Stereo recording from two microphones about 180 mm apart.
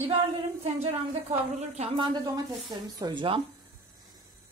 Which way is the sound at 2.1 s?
20° right (ahead or behind).